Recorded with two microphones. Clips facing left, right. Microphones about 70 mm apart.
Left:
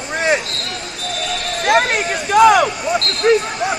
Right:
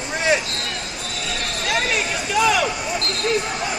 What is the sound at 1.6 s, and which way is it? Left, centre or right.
Speech, left.